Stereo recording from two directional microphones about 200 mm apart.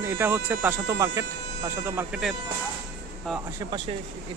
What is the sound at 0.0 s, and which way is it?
Speech, 10° right (ahead or behind).